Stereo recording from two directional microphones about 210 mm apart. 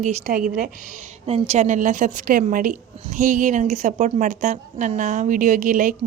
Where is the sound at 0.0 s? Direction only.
35° right (ahead or behind).